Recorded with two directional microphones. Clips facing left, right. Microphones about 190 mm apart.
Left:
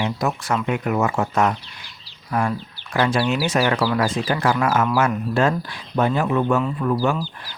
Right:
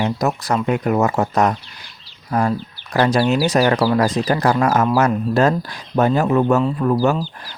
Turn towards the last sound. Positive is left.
turn(degrees=-40)  # may be behind; listen again after turning